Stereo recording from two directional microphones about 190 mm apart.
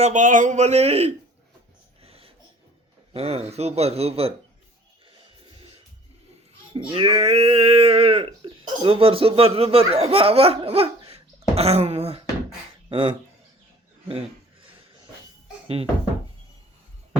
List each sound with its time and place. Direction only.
0.0 s speech: 40° right (ahead or behind)
2.0 s wheeze: 30° right (ahead or behind)
3.1 s speech: 30° right (ahead or behind)
6.9 s speech: 30° right (ahead or behind)
11.1 s a sound: 35° right (ahead or behind)
12.9 s speech: 25° right (ahead or behind)
15.6 s music: 30° right (ahead or behind)